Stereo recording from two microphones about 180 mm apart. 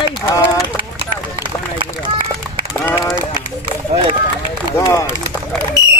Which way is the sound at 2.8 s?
20° left (ahead or behind).